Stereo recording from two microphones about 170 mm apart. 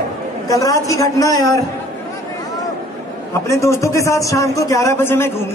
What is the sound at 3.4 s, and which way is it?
Speech, 15° left (ahead or behind).